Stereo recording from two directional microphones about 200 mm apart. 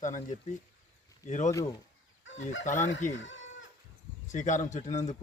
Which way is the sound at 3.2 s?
70° left (ahead or behind).